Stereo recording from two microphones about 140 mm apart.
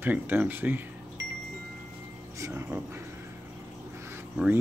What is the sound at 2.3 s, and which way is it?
Speech, 20° right (ahead or behind).